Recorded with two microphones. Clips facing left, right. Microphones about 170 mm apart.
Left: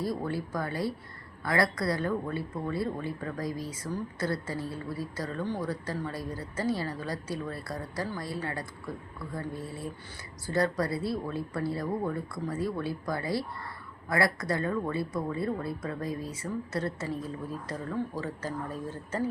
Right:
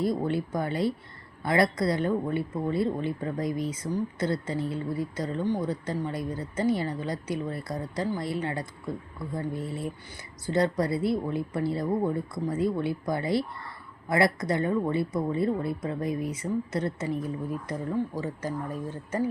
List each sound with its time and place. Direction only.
0.0 s speech: 20° right (ahead or behind)